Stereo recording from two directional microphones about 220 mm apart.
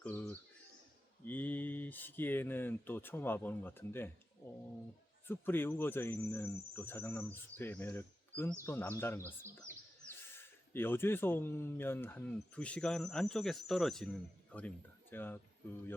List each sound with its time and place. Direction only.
0.0 s a sound: 5° left (ahead or behind)
1.2 s speech: 10° left (ahead or behind)
5.3 s speech: 10° left (ahead or behind)